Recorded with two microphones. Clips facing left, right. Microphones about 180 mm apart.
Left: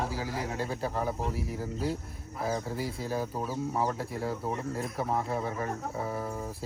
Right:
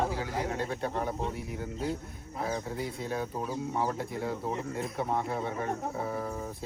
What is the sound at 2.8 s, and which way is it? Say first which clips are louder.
Speech: left 1 dB; 5° left (ahead or behind).